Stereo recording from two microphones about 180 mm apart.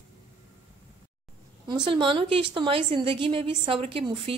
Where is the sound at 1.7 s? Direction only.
25° right (ahead or behind).